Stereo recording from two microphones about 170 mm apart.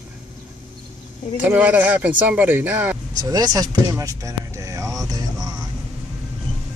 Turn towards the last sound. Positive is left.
turn(degrees=-20)  # may be behind; listen again after turning